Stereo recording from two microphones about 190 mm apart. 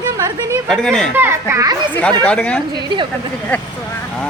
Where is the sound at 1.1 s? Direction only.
10° right (ahead or behind).